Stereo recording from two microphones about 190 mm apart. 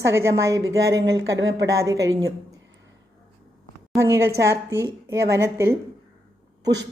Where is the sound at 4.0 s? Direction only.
15° right (ahead or behind).